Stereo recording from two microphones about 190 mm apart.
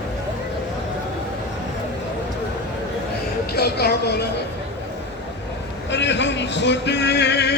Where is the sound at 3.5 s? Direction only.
60° left (ahead or behind).